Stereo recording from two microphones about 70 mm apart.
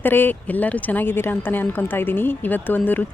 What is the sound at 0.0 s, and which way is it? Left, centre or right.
A woman's voice, left.